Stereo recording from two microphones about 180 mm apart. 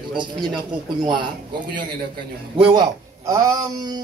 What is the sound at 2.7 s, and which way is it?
A man's voice, 20° right (ahead or behind).